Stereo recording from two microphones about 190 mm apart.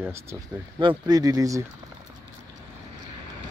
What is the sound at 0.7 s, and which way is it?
Speech, 25° right (ahead or behind).